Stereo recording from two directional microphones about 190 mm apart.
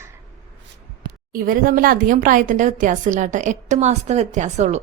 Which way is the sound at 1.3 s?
50° right (ahead or behind).